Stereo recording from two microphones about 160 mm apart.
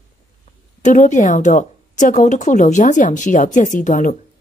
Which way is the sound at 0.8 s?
50° left (ahead or behind).